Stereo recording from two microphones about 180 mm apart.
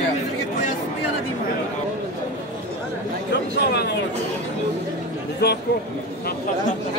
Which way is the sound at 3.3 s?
65° left (ahead or behind).